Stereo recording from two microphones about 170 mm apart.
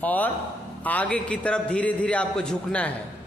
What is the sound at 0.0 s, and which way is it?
A man's voice, 10° left (ahead or behind).